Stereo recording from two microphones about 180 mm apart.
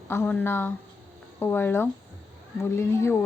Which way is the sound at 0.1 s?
10° left (ahead or behind).